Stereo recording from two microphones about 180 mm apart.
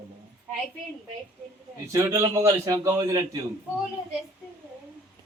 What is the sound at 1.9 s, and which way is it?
A man's voice, 15° right (ahead or behind).